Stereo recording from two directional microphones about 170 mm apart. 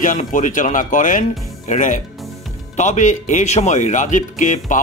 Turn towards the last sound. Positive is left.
turn(degrees=50)  # may be behind; listen again after turning